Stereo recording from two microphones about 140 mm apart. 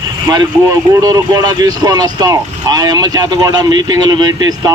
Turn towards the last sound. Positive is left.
turn(degrees=-30)  # may be behind; listen again after turning